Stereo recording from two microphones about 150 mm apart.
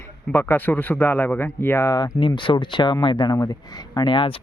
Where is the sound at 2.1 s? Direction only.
35° left (ahead or behind).